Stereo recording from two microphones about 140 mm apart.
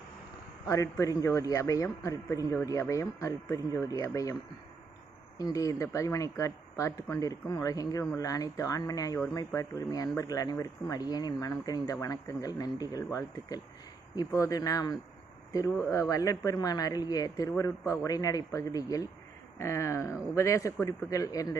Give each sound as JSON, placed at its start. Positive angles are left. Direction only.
{"t": 0.7, "sound": "speech", "side_deg": 20}
{"t": 5.4, "sound": "speech", "side_deg": 25}